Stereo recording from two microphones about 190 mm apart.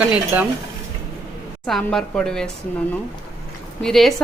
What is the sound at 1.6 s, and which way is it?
Speech, centre (ahead or behind).